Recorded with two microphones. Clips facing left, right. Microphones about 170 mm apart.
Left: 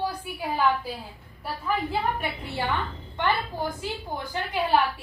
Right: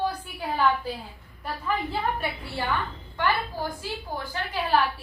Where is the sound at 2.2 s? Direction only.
20° left (ahead or behind).